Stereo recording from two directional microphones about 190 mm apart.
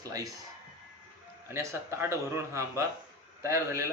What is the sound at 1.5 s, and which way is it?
A man's voice, 15° right (ahead or behind).